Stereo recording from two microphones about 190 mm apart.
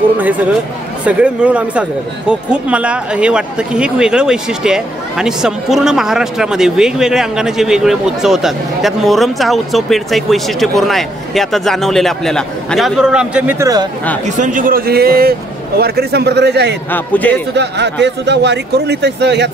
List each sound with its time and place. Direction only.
0.2 s speech: 10° right (ahead or behind)
14.2 s a man's voice: 40° right (ahead or behind); by 16.7 s 60° right (ahead or behind)
16.9 s a man's voice: 10° left (ahead or behind)
17.6 s a man's voice: 65° right (ahead or behind)